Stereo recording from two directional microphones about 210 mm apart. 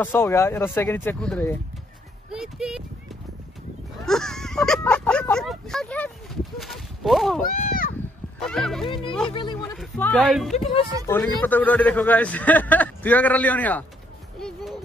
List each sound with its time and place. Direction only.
0.0 s a man's voice: 10° left (ahead or behind)
4.0 s speech: centre (ahead or behind)
6.6 s a sound: centre (ahead or behind)
7.4 s a sound: 45° left (ahead or behind)
8.4 s speech: centre (ahead or behind)
8.8 s speech: 25° left (ahead or behind)
9.8 s speech: 5° left (ahead or behind)
10.5 s speech: 30° left (ahead or behind)
11.1 s a man's voice: 10° left (ahead or behind)